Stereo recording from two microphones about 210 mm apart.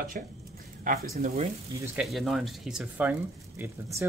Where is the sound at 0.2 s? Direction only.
40° right (ahead or behind).